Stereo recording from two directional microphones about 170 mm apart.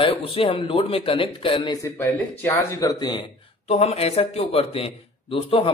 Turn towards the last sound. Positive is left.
turn(degrees=30)  # may be behind; listen again after turning